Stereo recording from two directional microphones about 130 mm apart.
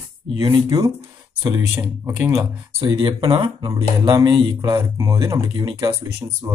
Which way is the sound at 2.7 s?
35° right (ahead or behind).